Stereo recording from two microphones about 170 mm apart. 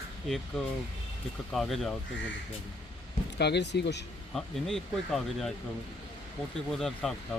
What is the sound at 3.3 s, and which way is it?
Speech, 80° left.